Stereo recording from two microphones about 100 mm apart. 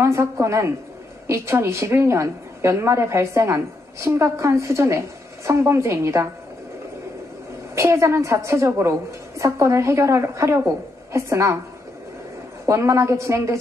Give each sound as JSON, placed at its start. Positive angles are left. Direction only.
{"t": 0.0, "sound": "a woman's voice", "side_deg": -30}
{"t": 7.7, "sound": "a woman's voice", "side_deg": -30}
{"t": 12.6, "sound": "a woman's voice", "side_deg": -30}